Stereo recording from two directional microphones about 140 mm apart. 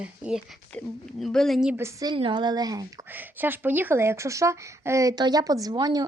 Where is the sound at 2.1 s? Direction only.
35° right (ahead or behind).